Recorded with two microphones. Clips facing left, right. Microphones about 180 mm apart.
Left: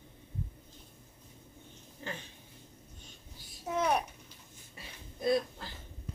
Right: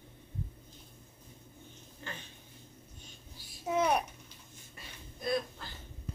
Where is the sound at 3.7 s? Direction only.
5° right (ahead or behind).